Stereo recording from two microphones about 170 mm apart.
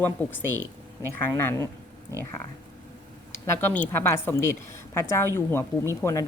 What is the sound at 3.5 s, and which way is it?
Speech, 10° left (ahead or behind).